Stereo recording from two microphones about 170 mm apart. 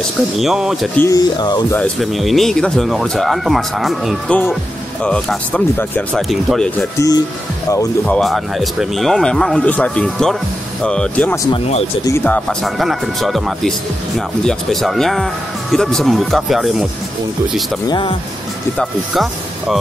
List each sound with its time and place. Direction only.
0.4 s speech: centre (ahead or behind)
0.9 s speech: 20° left (ahead or behind)
1.8 s speech: centre (ahead or behind)
7.0 s speech: 20° left (ahead or behind)
8.0 s speech: 5° left (ahead or behind)
17.8 s speech: 30° left (ahead or behind)